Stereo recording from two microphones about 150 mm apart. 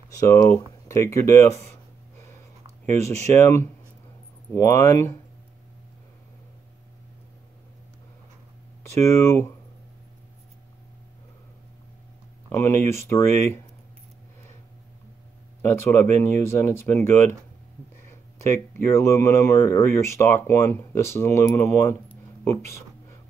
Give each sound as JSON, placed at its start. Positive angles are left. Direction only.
{"t": 0.1, "sound": "a sound", "side_deg": 20}
{"t": 2.9, "sound": "speech", "side_deg": 20}
{"t": 9.0, "sound": "speech", "side_deg": 20}
{"t": 12.4, "sound": "speech", "side_deg": 15}
{"t": 15.6, "sound": "speech", "side_deg": 15}
{"t": 18.7, "sound": "speech", "side_deg": 20}